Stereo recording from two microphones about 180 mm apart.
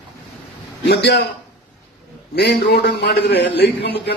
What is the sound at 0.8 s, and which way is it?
Speech, 65° left (ahead or behind).